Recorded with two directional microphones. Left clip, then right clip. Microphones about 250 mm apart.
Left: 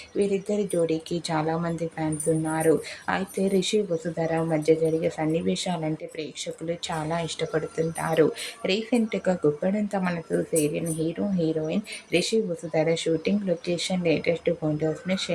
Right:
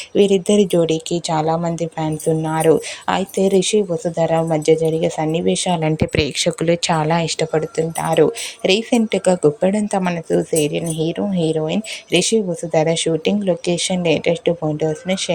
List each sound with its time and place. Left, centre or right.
0.2 s speech: right
5.8 s speech: right